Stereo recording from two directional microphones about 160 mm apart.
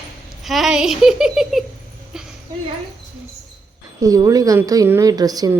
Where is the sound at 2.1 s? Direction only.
5° right (ahead or behind).